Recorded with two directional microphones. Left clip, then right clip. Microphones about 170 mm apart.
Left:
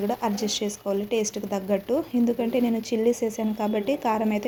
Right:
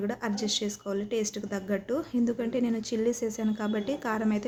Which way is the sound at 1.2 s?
25° right (ahead or behind).